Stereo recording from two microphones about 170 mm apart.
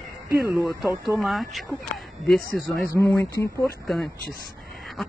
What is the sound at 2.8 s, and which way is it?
Speech, 15° left (ahead or behind).